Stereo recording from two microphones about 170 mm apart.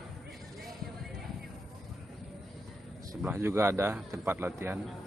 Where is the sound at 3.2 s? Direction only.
15° right (ahead or behind).